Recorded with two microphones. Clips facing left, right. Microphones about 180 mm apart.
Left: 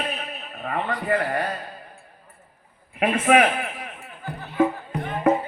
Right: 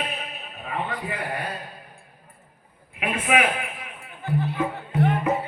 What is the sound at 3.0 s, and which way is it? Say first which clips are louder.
Speech: left 5 dB; 45° left (ahead or behind).